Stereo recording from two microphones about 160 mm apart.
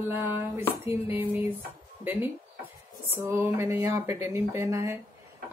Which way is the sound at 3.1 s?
15° right (ahead or behind).